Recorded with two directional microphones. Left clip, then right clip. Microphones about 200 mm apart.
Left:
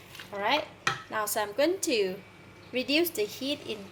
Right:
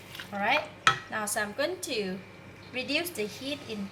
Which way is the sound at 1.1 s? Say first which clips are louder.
Left 2 dB; 45° left (ahead or behind).